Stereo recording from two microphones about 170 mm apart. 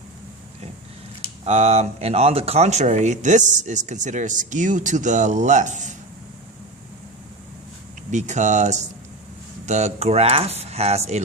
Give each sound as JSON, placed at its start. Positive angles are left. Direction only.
{"t": 1.5, "sound": "speech", "side_deg": -40}
{"t": 8.1, "sound": "speech", "side_deg": -45}